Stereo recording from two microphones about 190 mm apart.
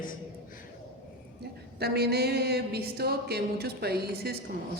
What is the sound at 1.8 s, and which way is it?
A man's voice, 55° right (ahead or behind).